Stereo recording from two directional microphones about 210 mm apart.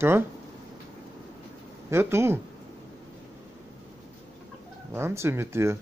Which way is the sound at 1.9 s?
10° right (ahead or behind).